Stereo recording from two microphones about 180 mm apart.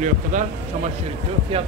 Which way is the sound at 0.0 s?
45° right (ahead or behind).